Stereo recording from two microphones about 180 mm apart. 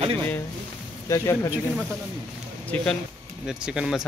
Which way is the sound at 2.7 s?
5° left (ahead or behind).